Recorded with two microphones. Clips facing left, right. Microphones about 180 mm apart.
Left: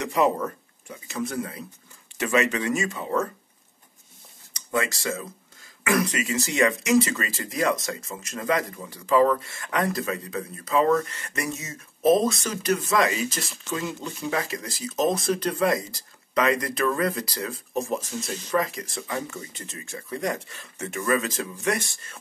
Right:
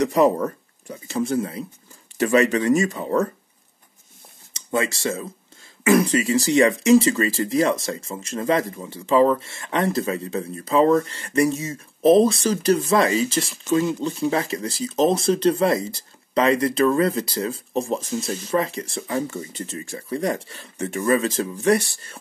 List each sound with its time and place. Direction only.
0.0 s speech: 35° right (ahead or behind)
4.6 s speech: 25° right (ahead or behind)